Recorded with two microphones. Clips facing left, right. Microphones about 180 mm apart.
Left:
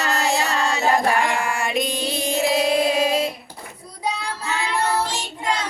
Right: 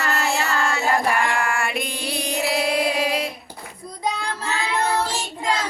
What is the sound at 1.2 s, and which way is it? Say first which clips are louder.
Female singing: even; 20° left (ahead or behind).